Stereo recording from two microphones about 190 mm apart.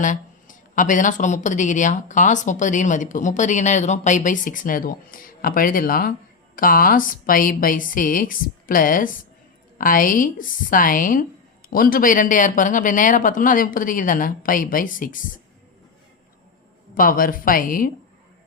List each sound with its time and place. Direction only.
0.0 s speech: 40° left (ahead or behind)
16.9 s speech: 45° left (ahead or behind)